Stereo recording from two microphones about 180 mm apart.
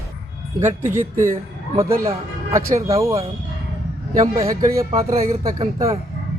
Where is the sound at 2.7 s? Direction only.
15° right (ahead or behind).